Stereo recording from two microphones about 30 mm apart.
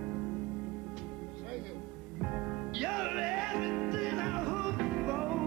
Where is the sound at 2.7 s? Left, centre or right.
Centre.